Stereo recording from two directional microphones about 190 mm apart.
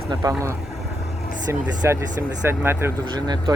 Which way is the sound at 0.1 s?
15° right (ahead or behind).